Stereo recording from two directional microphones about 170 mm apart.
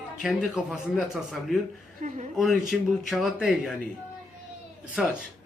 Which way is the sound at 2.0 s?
50° right (ahead or behind).